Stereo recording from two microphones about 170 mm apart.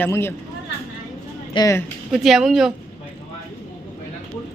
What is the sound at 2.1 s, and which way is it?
Speech, centre (ahead or behind).